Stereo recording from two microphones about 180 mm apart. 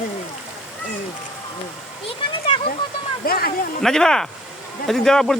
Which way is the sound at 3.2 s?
55° left (ahead or behind).